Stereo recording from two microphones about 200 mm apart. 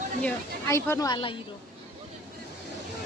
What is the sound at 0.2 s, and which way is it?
Speech, 10° left (ahead or behind).